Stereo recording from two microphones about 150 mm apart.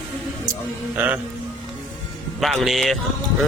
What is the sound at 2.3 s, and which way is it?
Speech, centre (ahead or behind).